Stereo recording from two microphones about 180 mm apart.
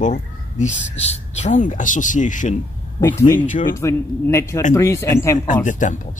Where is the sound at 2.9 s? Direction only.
15° left (ahead or behind).